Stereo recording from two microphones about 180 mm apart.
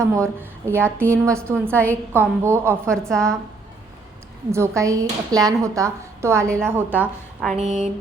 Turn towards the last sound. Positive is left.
turn(degrees=-5)  # may be behind; listen again after turning